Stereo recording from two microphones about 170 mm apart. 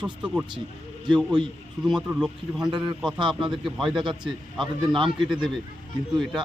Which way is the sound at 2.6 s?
25° right (ahead or behind).